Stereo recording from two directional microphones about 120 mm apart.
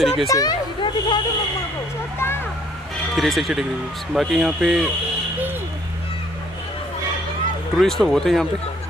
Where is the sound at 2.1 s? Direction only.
20° left (ahead or behind).